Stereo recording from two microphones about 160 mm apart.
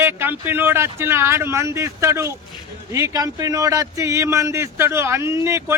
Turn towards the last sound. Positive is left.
turn(degrees=-15)  # may be behind; listen again after turning